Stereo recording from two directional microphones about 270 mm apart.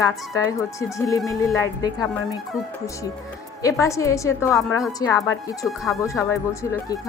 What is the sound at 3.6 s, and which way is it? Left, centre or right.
A woman's voice, centre.